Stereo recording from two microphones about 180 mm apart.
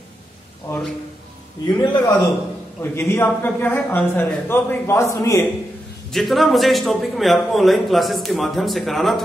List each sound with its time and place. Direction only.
0.7 s a man's voice: 15° left (ahead or behind)
6.1 s a man's voice: centre (ahead or behind)